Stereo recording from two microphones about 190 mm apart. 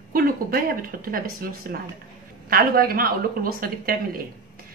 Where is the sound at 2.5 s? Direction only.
50° right (ahead or behind).